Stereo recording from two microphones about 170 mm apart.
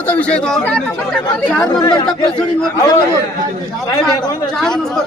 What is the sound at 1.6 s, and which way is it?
Speech, 25° left (ahead or behind).